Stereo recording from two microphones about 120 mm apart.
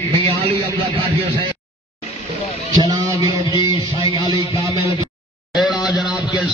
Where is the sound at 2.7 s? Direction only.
35° right (ahead or behind).